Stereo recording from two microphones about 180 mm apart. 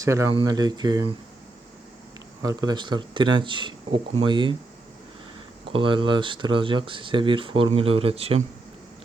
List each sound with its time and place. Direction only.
0.0 s speech: 15° right (ahead or behind)
2.4 s speech: 20° right (ahead or behind)
5.7 s speech: 25° right (ahead or behind)